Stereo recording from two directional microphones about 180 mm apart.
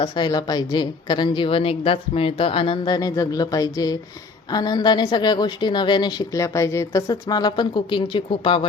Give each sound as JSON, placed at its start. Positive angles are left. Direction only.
{"t": 0.0, "sound": "a woman's voice", "side_deg": 25}